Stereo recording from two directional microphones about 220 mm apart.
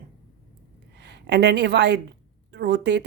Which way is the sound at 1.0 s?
50° right (ahead or behind).